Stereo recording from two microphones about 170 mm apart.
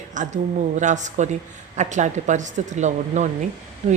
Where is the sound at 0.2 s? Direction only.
45° right (ahead or behind).